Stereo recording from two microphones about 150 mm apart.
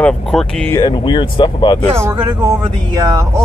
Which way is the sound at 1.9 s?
15° right (ahead or behind).